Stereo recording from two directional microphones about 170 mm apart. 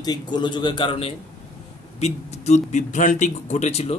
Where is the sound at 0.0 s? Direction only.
25° left (ahead or behind).